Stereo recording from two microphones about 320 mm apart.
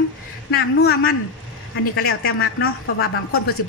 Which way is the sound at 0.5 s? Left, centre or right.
Left.